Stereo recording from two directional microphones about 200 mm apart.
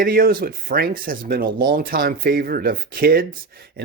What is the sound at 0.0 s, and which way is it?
Speech, 45° right (ahead or behind).